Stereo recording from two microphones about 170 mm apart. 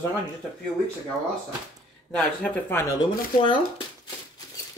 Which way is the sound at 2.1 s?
5° left (ahead or behind).